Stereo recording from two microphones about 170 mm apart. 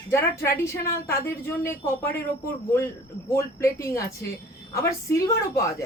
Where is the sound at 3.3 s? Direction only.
15° left (ahead or behind).